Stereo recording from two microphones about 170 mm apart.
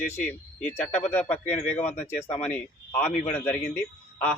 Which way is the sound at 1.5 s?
40° left (ahead or behind).